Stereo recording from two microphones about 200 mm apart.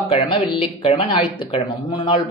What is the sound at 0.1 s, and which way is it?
Speech, 30° left (ahead or behind).